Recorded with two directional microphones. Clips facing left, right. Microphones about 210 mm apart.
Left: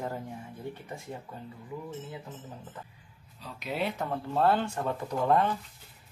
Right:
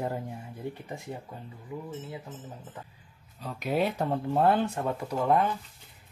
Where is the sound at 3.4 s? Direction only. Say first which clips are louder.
Right 5 dB; 50° right (ahead or behind).